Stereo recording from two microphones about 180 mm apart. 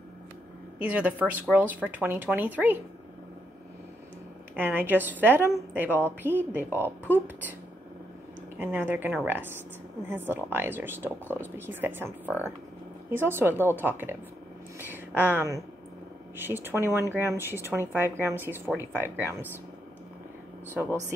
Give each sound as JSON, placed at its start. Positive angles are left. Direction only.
{"t": 0.7, "sound": "speech", "side_deg": -10}
{"t": 4.6, "sound": "speech", "side_deg": -10}
{"t": 8.5, "sound": "speech", "side_deg": -10}
{"t": 13.1, "sound": "speech", "side_deg": -10}
{"t": 20.7, "sound": "speech", "side_deg": -15}